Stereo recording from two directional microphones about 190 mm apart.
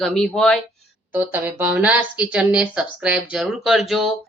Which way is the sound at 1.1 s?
10° right (ahead or behind).